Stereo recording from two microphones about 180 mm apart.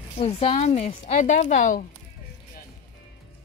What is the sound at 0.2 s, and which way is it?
Speech, 35° left (ahead or behind).